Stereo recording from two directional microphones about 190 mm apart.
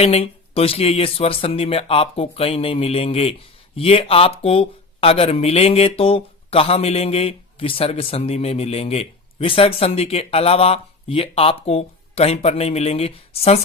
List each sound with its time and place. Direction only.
0.0 s speech: 30° left (ahead or behind)